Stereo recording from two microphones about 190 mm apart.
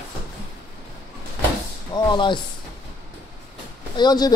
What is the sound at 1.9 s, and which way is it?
Speech, 25° left (ahead or behind).